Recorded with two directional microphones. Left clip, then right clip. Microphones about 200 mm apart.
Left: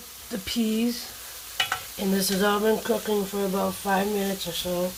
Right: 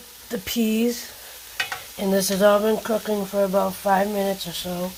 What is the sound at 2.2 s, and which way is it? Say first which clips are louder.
Speech: right 6 dB; 40° right (ahead or behind).